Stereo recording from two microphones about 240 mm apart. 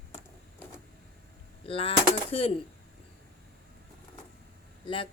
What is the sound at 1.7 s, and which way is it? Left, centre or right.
Speech, left.